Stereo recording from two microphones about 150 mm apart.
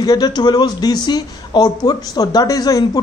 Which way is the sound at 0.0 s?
25° left (ahead or behind).